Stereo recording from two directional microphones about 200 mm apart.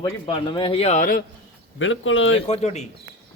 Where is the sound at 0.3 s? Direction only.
25° left (ahead or behind); by 1.2 s 40° left (ahead or behind).